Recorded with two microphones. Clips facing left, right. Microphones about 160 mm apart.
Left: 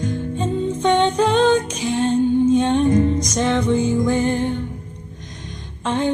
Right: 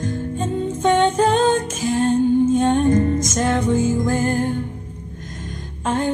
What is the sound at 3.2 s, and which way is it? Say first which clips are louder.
Music: even; 45° right (ahead or behind).